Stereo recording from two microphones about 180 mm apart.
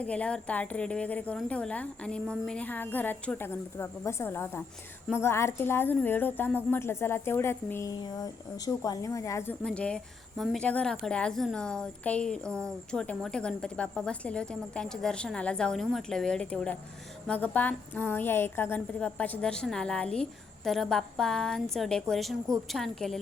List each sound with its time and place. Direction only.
0.0 s speech: 5° left (ahead or behind)